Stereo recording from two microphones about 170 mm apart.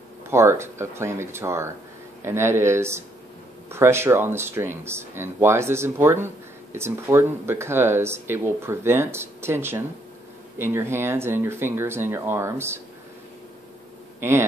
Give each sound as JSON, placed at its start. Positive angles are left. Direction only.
{"t": 0.3, "sound": "speech", "side_deg": -15}